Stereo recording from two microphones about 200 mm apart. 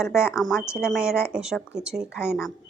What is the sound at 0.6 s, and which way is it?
Speech, 15° left (ahead or behind).